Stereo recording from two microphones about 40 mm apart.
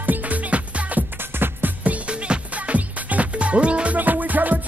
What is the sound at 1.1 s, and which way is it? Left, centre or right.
Music, right.